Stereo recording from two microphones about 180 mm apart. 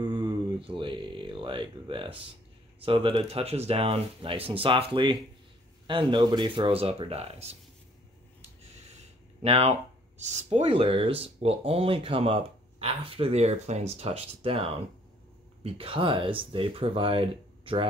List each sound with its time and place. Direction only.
0.0 s a sound: 20° right (ahead or behind)
2.8 s speech: 30° right (ahead or behind)
9.4 s speech: 35° right (ahead or behind)
10.7 s speech: 30° right (ahead or behind)